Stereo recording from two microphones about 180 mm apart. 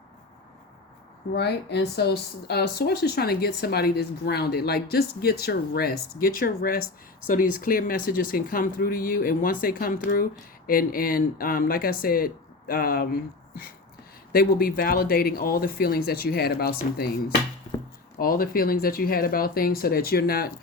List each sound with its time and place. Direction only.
1.3 s speech: 65° left (ahead or behind)
17.7 s chopping: 30° left (ahead or behind)
18.2 s speech: 55° left (ahead or behind)